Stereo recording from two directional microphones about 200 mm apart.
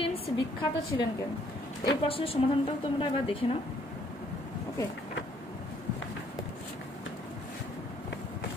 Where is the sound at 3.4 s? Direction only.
30° left (ahead or behind).